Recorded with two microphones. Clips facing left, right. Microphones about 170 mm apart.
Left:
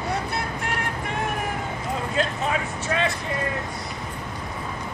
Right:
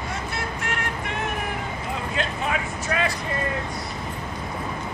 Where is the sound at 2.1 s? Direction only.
35° left (ahead or behind).